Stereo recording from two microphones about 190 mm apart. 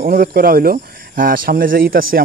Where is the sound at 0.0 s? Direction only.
50° right (ahead or behind).